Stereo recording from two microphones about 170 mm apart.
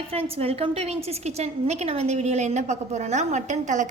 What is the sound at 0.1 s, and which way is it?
A woman's voice, 35° right (ahead or behind).